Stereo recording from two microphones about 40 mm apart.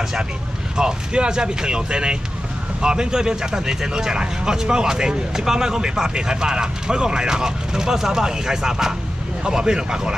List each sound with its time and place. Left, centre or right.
0.7 s speech: right